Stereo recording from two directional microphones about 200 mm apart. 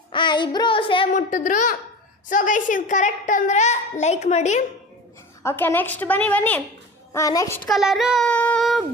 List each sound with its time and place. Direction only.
0.1 s child singing: 25° left (ahead or behind)
1.1 s a woman's voice: 40° left (ahead or behind)
5.4 s a woman's voice: 10° left (ahead or behind)
7.7 s a child's voice: centre (ahead or behind)